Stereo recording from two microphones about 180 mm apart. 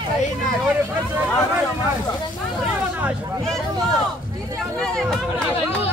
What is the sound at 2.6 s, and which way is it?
Hubbub, 5° right (ahead or behind).